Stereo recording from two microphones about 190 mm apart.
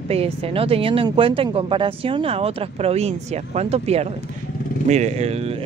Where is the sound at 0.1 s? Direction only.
30° right (ahead or behind).